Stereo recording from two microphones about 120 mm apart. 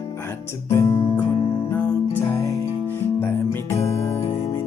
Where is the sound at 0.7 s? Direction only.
25° left (ahead or behind).